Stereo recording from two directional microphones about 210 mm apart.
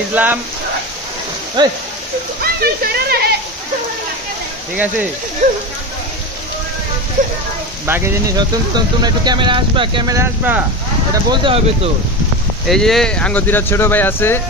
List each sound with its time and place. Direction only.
0.1 s speech: 10° right (ahead or behind)
1.6 s speech: 20° right (ahead or behind)
2.6 s speech: 50° right (ahead or behind)
7.2 s speech: 40° right (ahead or behind)
7.8 s speech: 10° right (ahead or behind)
11.2 s speech: 25° right (ahead or behind)
12.6 s speech: centre (ahead or behind)